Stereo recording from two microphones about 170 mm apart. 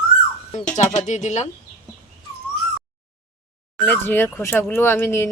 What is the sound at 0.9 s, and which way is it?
Speech, 45° left (ahead or behind).